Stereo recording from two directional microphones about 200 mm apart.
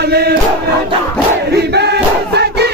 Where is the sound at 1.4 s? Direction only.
55° right (ahead or behind).